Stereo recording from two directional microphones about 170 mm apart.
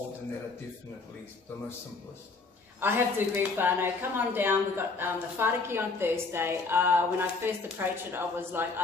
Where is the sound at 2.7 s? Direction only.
15° right (ahead or behind).